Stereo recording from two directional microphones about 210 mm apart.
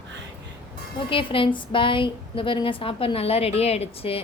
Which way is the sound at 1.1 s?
25° left (ahead or behind).